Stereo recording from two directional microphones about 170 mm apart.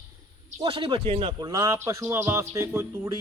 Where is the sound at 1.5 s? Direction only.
20° right (ahead or behind).